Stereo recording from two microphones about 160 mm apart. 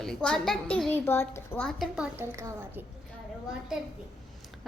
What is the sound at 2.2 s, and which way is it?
Speech, 20° right (ahead or behind).